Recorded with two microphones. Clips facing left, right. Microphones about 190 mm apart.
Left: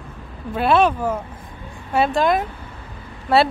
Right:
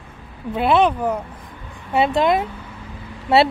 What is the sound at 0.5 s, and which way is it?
Speech, 20° right (ahead or behind).